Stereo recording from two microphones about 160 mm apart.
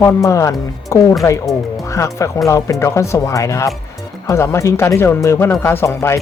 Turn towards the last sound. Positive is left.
turn(degrees=15)  # may be behind; listen again after turning